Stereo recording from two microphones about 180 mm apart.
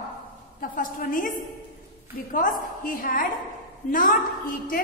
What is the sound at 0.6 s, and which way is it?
Speech, 50° left (ahead or behind).